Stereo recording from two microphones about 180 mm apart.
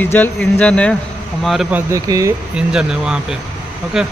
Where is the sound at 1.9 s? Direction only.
15° right (ahead or behind).